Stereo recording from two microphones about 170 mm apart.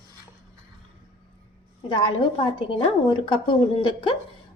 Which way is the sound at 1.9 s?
30° left (ahead or behind).